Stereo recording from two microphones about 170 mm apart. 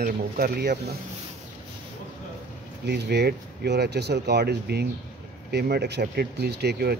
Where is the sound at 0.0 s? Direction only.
70° right (ahead or behind).